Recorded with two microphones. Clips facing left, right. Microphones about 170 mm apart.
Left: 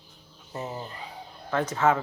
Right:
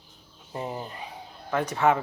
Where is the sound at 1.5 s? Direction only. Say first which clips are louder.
Right 1 dB; 15° right (ahead or behind).